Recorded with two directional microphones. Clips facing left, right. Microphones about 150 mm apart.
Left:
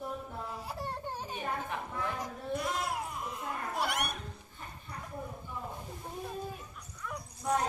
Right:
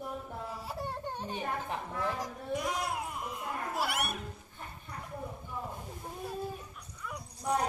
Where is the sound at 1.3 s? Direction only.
30° right (ahead or behind).